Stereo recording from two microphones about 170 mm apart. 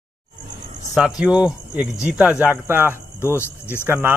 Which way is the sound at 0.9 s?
5° right (ahead or behind).